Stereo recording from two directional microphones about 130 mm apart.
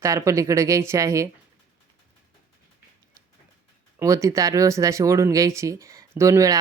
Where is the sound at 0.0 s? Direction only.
25° right (ahead or behind).